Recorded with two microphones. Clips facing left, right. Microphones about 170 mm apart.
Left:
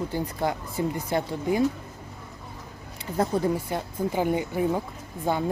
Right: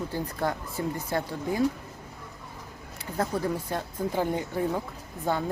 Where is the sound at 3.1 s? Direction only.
25° left (ahead or behind).